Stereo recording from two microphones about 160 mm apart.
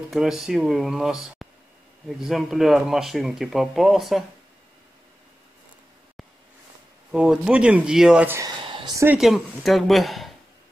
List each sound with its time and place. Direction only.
0.1 s speech: 5° right (ahead or behind)
7.1 s speech: 5° right (ahead or behind)
8.6 s a sound: 30° right (ahead or behind)
8.9 s speech: 15° right (ahead or behind)
9.2 s speech: centre (ahead or behind)